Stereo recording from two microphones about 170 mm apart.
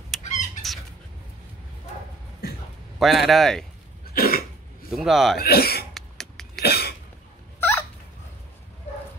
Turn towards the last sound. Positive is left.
turn(degrees=10)  # may be behind; listen again after turning